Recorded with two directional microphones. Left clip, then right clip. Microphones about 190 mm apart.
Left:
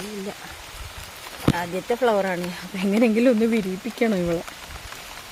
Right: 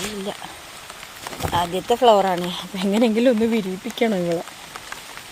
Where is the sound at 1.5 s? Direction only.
20° right (ahead or behind).